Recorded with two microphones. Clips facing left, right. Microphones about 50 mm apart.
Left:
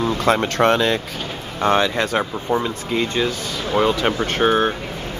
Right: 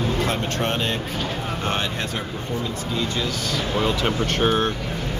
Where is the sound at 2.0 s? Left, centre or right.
Left.